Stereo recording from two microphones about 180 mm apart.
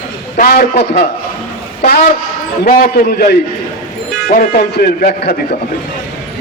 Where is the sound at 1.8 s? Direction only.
55° left (ahead or behind).